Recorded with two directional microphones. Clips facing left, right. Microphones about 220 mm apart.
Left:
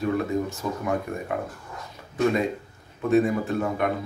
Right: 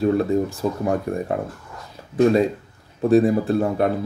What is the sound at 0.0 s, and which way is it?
Speech, 35° right (ahead or behind).